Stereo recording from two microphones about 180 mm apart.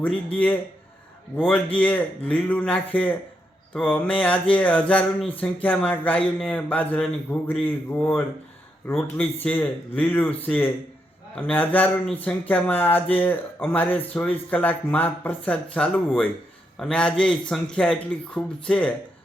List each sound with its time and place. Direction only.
0.3 s speech: 10° left (ahead or behind)
1.8 s a man's voice: 10° left (ahead or behind)